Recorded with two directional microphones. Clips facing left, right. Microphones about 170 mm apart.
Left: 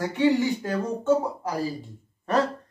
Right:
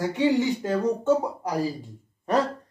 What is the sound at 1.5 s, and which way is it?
Speech, 15° right (ahead or behind).